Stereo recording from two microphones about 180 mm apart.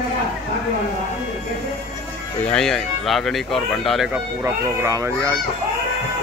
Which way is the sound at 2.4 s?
5° left (ahead or behind).